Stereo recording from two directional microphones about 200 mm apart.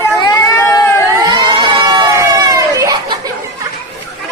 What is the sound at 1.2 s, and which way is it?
Crowd, 20° right (ahead or behind).